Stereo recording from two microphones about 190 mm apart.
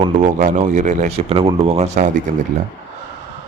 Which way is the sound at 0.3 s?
40° right (ahead or behind).